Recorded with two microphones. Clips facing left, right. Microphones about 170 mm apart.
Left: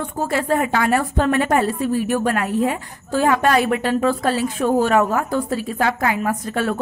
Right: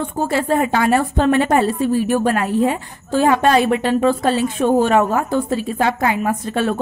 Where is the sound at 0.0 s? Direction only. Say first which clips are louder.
Right 3 dB; 30° right (ahead or behind).